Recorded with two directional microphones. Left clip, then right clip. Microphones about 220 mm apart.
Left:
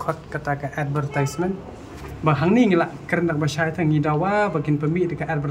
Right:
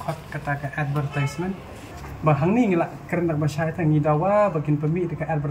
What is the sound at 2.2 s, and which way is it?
Speech, 10° left (ahead or behind).